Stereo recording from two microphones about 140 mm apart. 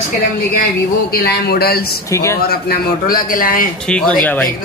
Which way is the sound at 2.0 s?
20° left (ahead or behind).